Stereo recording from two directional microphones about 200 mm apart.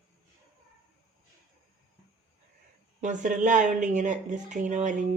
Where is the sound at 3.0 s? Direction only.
40° right (ahead or behind).